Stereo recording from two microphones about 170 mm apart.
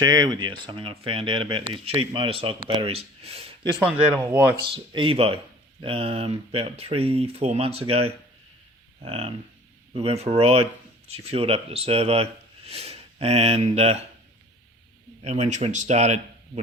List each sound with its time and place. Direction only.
0.0 s speech: 25° right (ahead or behind)
4.2 s speech: 15° right (ahead or behind)
4.7 s speech: 30° right (ahead or behind)
15.2 s speech: 40° right (ahead or behind)